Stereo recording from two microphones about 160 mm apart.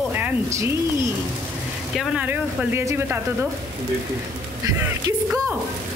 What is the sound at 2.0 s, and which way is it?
Speech, centre (ahead or behind).